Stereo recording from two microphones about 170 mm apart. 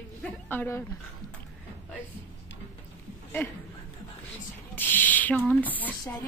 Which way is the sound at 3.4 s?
15° left (ahead or behind).